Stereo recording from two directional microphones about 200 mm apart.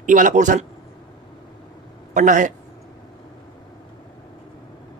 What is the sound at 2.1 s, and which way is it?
Speech, 40° right (ahead or behind).